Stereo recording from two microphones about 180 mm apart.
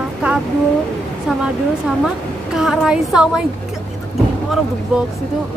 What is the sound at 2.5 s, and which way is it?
Speech, centre (ahead or behind).